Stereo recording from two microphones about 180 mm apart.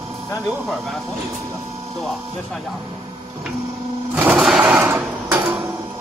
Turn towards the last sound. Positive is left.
turn(degrees=-10)  # may be behind; listen again after turning